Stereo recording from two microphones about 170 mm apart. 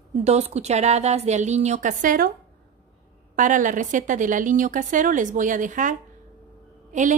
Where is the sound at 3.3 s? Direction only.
50° right (ahead or behind).